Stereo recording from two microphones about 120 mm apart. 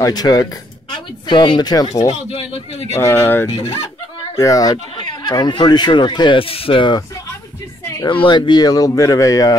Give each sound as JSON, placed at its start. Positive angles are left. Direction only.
{"t": 0.0, "sound": "speech", "side_deg": 35}
{"t": 1.9, "sound": "speech", "side_deg": 60}
{"t": 3.0, "sound": "speech", "side_deg": 20}
{"t": 3.4, "sound": "speech", "side_deg": 55}
{"t": 4.4, "sound": "speech", "side_deg": 30}
{"t": 4.9, "sound": "speech", "side_deg": 40}
{"t": 8.1, "sound": "speech", "side_deg": 40}